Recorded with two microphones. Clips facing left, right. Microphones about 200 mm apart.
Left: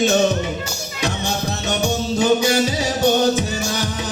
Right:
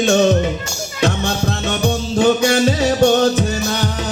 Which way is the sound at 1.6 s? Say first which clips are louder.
Left 1 dB; 55° right (ahead or behind).